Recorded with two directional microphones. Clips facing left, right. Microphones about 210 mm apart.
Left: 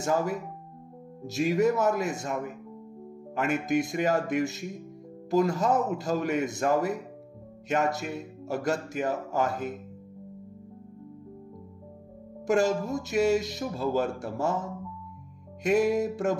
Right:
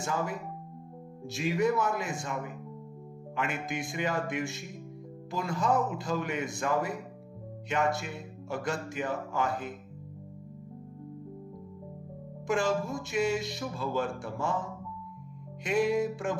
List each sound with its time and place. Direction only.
0.0 s music: 40° left (ahead or behind)
12.4 s music: 40° left (ahead or behind)